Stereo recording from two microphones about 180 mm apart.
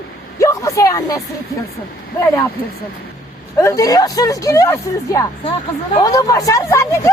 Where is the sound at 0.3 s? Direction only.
15° left (ahead or behind).